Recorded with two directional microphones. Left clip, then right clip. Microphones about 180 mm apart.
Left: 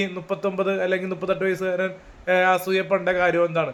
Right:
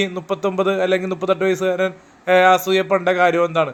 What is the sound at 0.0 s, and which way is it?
A man's voice, 25° right (ahead or behind).